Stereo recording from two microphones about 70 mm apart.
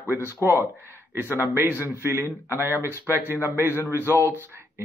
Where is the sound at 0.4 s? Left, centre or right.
Right.